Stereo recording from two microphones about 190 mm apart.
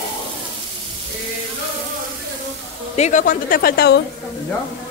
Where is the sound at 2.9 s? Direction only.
40° left (ahead or behind); by 4.0 s 55° left (ahead or behind).